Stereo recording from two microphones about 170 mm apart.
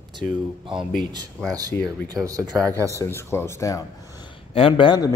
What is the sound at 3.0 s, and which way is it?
Speech, 15° left (ahead or behind).